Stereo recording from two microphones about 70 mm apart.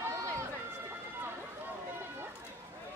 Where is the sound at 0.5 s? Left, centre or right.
Right.